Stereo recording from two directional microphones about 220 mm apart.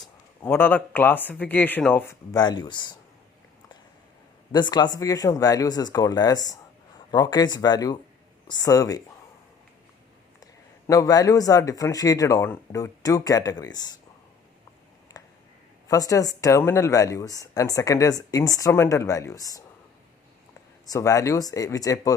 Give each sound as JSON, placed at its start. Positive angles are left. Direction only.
{"t": 0.0, "sound": "speech", "side_deg": 10}
{"t": 4.5, "sound": "speech", "side_deg": 20}
{"t": 10.4, "sound": "speech", "side_deg": 15}
{"t": 15.1, "sound": "a sound", "side_deg": 15}
{"t": 15.9, "sound": "speech", "side_deg": 15}
{"t": 20.8, "sound": "speech", "side_deg": 15}